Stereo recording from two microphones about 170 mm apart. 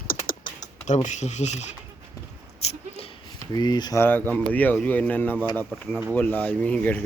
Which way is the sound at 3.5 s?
25° left (ahead or behind).